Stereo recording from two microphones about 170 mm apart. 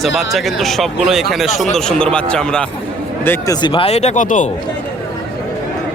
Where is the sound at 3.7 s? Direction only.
35° left (ahead or behind); by 4.5 s 50° left (ahead or behind).